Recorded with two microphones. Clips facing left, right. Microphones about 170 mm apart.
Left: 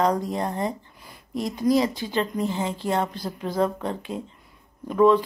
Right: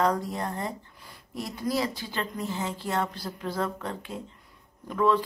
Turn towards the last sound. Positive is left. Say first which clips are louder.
# left 6 dB
turn(degrees=20)  # may be behind; listen again after turning